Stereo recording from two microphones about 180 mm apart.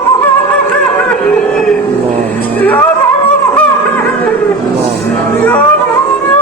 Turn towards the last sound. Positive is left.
turn(degrees=5)  # may be behind; listen again after turning